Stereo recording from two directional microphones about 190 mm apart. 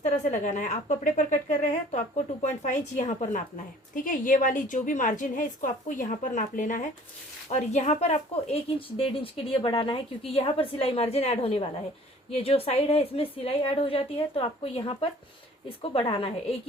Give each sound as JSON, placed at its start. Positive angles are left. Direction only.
{"t": 0.0, "sound": "a woman's voice", "side_deg": 40}